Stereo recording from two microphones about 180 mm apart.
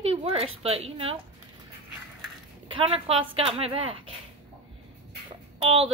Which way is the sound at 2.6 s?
30° right (ahead or behind).